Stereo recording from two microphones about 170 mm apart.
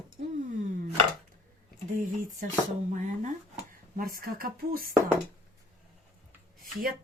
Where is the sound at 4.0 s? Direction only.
60° right (ahead or behind).